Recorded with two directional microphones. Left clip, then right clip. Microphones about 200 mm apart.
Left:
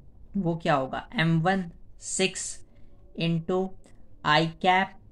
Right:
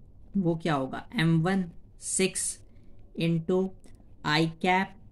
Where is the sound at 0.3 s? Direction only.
20° right (ahead or behind).